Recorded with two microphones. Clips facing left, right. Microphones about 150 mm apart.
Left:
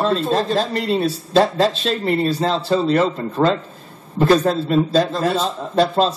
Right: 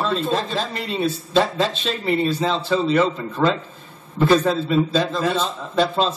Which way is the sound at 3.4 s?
35° left (ahead or behind).